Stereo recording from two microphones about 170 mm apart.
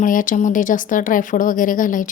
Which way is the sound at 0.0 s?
50° left (ahead or behind).